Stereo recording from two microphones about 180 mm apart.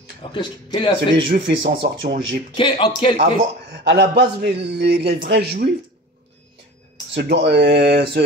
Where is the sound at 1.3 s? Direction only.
65° right (ahead or behind).